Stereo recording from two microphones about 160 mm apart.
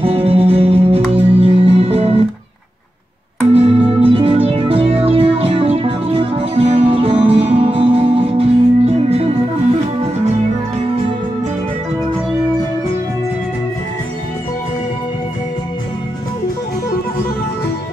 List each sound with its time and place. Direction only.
0.0 s music: 35° right (ahead or behind)
3.5 s music: 40° right (ahead or behind)